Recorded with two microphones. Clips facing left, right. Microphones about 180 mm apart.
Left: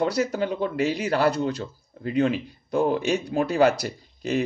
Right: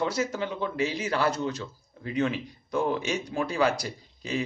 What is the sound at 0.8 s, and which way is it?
Speech, 60° left (ahead or behind).